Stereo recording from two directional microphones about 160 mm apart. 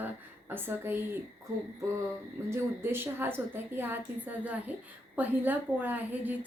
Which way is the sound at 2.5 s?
15° right (ahead or behind).